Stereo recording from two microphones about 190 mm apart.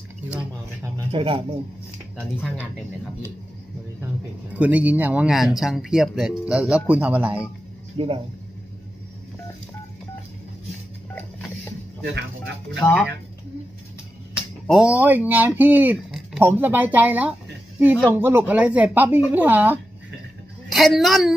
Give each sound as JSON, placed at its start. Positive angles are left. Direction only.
{"t": 0.9, "sound": "speech", "side_deg": -25}
{"t": 4.6, "sound": "speech", "side_deg": -10}
{"t": 8.0, "sound": "speech", "side_deg": -30}
{"t": 12.0, "sound": "speech", "side_deg": -65}
{"t": 12.8, "sound": "speech", "side_deg": 10}
{"t": 14.7, "sound": "speech", "side_deg": -5}